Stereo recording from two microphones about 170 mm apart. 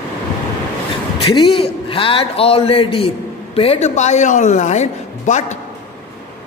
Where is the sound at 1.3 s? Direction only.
30° left (ahead or behind).